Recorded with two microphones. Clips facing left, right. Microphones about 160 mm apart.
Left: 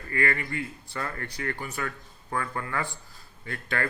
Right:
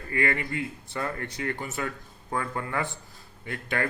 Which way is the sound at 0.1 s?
20° right (ahead or behind).